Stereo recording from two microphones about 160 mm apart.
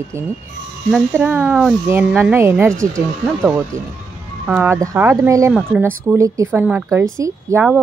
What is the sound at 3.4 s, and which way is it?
A woman's voice, 15° right (ahead or behind).